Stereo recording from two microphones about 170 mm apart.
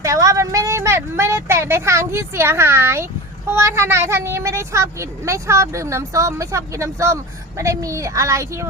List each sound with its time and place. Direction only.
0.0 s a woman's voice: 20° right (ahead or behind)